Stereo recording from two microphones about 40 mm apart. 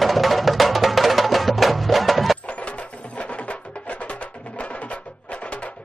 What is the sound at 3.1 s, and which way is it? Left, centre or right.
Music, left.